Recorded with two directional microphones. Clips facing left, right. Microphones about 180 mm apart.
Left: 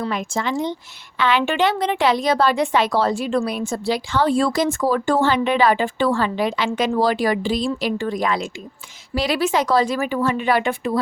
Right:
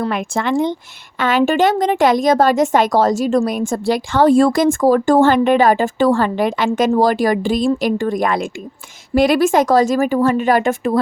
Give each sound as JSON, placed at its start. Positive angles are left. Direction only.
{"t": 0.0, "sound": "a woman's voice", "side_deg": -55}